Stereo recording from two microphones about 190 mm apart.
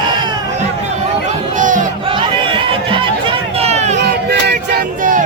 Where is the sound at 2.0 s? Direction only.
25° right (ahead or behind).